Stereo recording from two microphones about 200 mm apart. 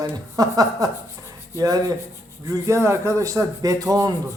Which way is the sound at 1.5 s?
15° right (ahead or behind).